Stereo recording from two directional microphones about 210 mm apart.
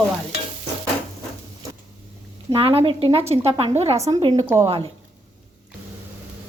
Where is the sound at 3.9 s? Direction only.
15° right (ahead or behind).